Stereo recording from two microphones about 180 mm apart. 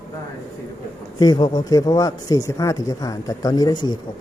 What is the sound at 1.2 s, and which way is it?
Speech, 25° left (ahead or behind).